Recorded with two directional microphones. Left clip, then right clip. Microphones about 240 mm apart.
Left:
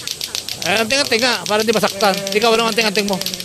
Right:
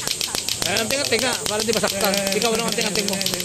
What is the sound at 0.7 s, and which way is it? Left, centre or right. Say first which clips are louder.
Speech: left 7 dB; left.